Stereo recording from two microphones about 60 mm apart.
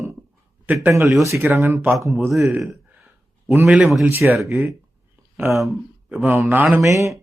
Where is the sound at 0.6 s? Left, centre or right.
Right.